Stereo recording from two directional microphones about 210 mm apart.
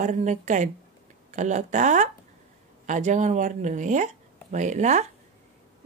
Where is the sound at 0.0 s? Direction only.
35° right (ahead or behind).